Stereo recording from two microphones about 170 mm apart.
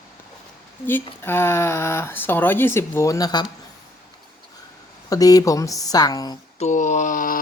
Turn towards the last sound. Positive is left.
turn(degrees=50)  # may be behind; listen again after turning